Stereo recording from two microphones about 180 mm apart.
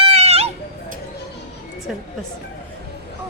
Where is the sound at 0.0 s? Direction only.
35° right (ahead or behind).